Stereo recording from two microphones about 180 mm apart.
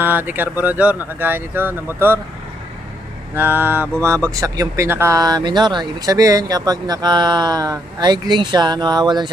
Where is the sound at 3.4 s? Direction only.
10° right (ahead or behind).